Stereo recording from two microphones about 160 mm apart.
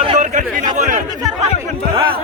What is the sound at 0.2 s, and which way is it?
Chatter, 50° right (ahead or behind).